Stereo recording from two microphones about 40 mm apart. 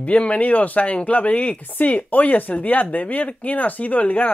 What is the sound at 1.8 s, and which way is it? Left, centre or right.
Speech, left.